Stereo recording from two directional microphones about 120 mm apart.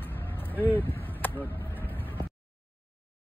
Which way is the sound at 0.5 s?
15° left (ahead or behind).